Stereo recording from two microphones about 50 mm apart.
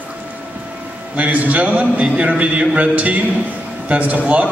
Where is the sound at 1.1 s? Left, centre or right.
Right.